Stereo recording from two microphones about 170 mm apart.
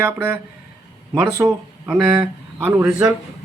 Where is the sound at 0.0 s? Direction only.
10° right (ahead or behind).